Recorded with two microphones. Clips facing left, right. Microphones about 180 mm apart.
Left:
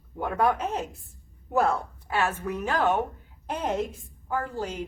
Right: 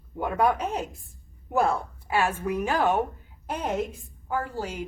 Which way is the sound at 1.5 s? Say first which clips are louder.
Even; 10° right (ahead or behind).